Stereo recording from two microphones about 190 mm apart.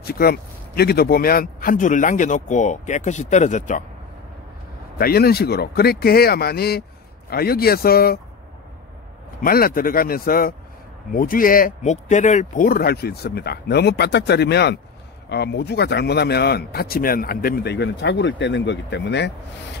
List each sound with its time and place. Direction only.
0.0 s speech: 55° left (ahead or behind)
4.9 s speech: 55° left (ahead or behind)
9.4 s speech: 50° left (ahead or behind)